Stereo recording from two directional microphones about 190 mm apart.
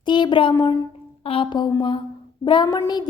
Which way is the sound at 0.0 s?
25° left (ahead or behind).